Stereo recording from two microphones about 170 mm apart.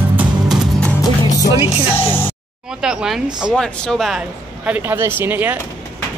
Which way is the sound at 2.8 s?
5° right (ahead or behind).